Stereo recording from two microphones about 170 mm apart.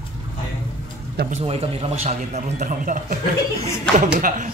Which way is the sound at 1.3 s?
35° right (ahead or behind).